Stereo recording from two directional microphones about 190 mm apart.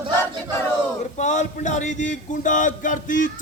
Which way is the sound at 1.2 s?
40° left (ahead or behind).